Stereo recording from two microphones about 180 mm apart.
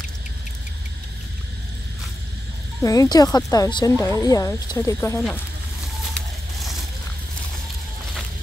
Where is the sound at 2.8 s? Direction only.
20° left (ahead or behind).